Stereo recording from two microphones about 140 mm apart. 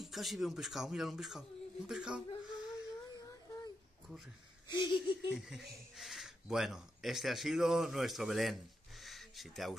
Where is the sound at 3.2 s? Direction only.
25° left (ahead or behind).